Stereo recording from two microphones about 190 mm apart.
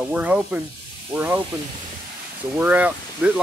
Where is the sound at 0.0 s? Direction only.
5° right (ahead or behind).